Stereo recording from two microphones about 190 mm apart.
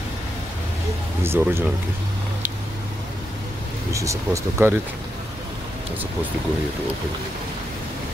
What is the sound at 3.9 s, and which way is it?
Speech, 15° right (ahead or behind).